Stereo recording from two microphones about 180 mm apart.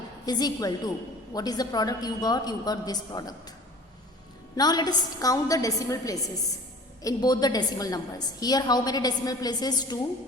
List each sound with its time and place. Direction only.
0.3 s a woman's voice: 20° left (ahead or behind)
4.5 s a woman's voice: 20° left (ahead or behind)